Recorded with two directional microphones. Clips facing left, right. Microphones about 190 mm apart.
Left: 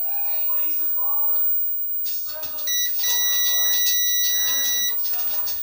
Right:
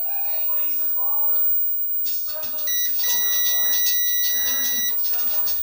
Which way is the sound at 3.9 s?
55° right (ahead or behind).